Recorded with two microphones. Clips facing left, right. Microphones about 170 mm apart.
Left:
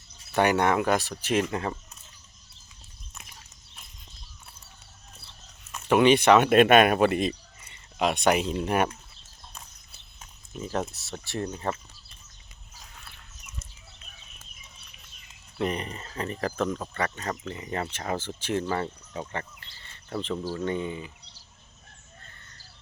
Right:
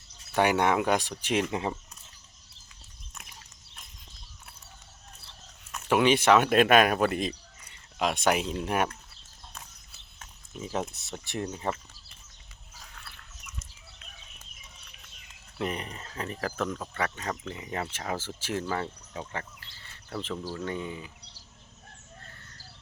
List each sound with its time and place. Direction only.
0.3 s speech: 10° right (ahead or behind)
5.7 s speech: 5° right (ahead or behind)
10.2 s a sound: 5° right (ahead or behind)
10.9 s speech: 20° right (ahead or behind)
15.5 s speech: centre (ahead or behind)
16.6 s speech: 10° left (ahead or behind)
16.9 s speech: 5° right (ahead or behind)
20.3 s speech: 10° left (ahead or behind)